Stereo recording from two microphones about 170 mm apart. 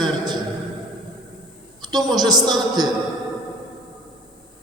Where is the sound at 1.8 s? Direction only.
25° right (ahead or behind).